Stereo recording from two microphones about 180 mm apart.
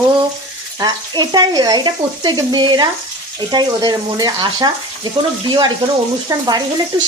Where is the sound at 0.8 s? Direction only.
25° right (ahead or behind).